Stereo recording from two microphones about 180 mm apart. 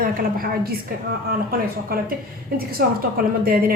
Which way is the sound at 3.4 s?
55° right (ahead or behind).